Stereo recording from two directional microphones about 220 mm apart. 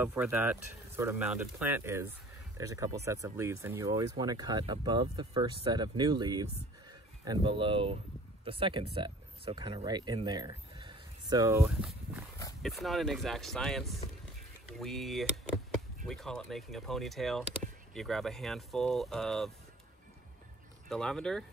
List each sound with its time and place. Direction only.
0.0 s speech: 10° right (ahead or behind)
12.6 s speech: centre (ahead or behind)
20.9 s speech: 5° left (ahead or behind)